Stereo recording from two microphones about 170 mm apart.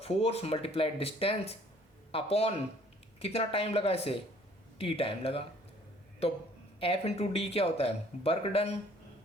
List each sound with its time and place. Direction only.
0.0 s speech: 35° left (ahead or behind)
6.7 s speech: 35° left (ahead or behind)